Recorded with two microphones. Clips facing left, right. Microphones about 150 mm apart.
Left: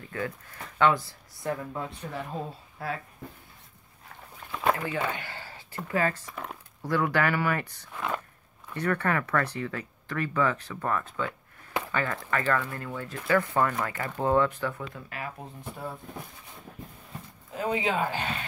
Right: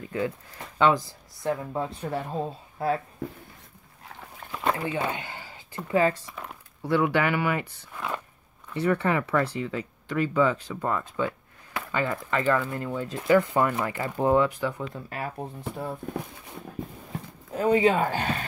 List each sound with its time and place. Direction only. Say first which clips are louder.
0.1 s speech: right 5 dB; 20° right (ahead or behind)
4.7 s a sound: right 2 dB; 30° right (ahead or behind)
5.9 s speech: right 5 dB; 20° right (ahead or behind)
6.3 s a sound: left 1 dB; centre (ahead or behind)
7.0 s speech: right 2 dB; 15° right (ahead or behind)
7.9 s a sound: left 1 dB; centre (ahead or behind)
8.7 s speech: right 3 dB; 10° right (ahead or behind)
15.0 s speech: right 5 dB; 35° right (ahead or behind)
17.6 s speech: right 7 dB; 40° right (ahead or behind)